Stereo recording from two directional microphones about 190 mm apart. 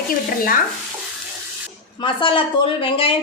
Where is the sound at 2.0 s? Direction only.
25° left (ahead or behind).